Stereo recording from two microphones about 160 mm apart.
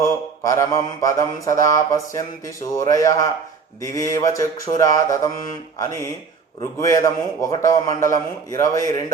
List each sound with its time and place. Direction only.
0.0 s mantra: 20° left (ahead or behind)
1.0 s a man's voice: 20° left (ahead or behind)